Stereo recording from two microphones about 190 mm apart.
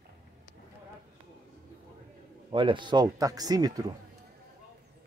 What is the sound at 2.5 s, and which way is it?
Speech, 25° right (ahead or behind).